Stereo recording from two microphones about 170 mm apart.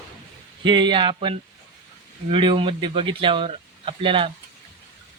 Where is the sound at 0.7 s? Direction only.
25° right (ahead or behind).